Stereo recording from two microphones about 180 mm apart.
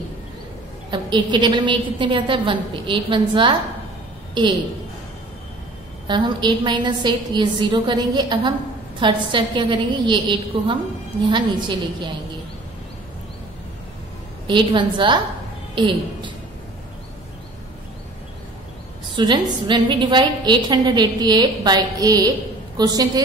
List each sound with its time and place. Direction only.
0.8 s a woman's voice: 25° right (ahead or behind)
6.0 s a woman's voice: 25° right (ahead or behind)
14.5 s a woman's voice: 25° right (ahead or behind)
19.1 s a woman's voice: 25° right (ahead or behind)